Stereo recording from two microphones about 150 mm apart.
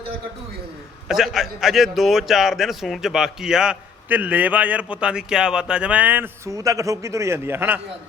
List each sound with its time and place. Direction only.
1.0 s a man's voice: 5° right (ahead or behind)